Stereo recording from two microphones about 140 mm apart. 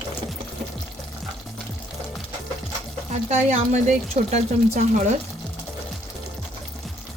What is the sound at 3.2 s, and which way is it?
Speech, 50° right (ahead or behind).